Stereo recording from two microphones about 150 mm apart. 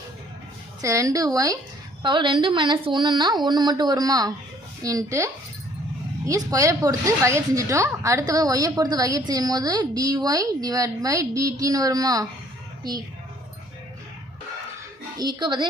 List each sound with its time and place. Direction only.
0.8 s speech: 20° right (ahead or behind)
15.2 s speech: 30° right (ahead or behind)